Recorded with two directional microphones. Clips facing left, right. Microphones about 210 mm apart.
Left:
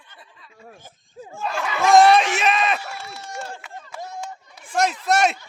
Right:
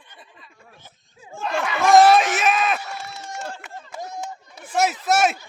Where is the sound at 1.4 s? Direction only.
Centre (ahead or behind).